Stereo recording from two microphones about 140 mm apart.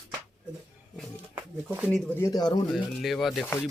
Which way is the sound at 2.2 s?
25° left (ahead or behind).